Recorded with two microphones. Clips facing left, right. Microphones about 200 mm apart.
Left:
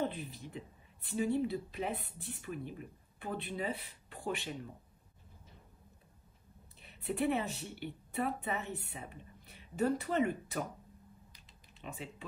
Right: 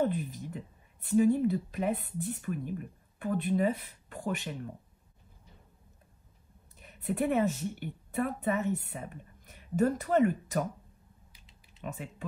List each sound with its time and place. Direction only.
0.6 s a woman's voice: 50° right (ahead or behind)
6.8 s speech: 50° right (ahead or behind)
11.8 s a woman's voice: 50° right (ahead or behind)